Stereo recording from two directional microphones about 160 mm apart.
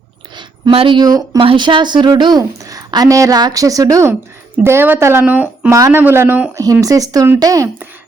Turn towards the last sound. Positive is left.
turn(degrees=-20)  # may be behind; listen again after turning